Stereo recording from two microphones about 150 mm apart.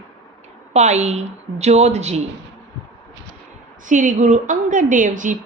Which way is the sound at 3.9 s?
60° right (ahead or behind).